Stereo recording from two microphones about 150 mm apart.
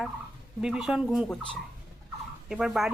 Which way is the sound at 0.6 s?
5° right (ahead or behind).